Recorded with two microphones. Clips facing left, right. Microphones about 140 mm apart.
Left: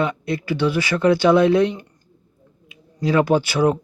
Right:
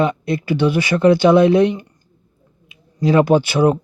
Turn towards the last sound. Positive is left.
turn(degrees=-20)  # may be behind; listen again after turning